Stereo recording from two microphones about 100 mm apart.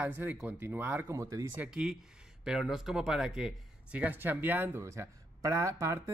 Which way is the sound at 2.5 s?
5° right (ahead or behind).